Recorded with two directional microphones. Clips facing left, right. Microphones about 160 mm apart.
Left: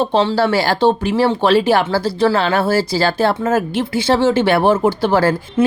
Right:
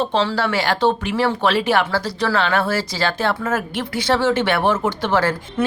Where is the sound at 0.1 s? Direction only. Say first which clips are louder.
Left 5 dB; 30° left (ahead or behind).